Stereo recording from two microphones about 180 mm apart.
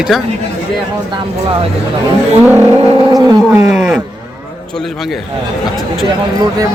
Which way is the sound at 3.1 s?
20° right (ahead or behind).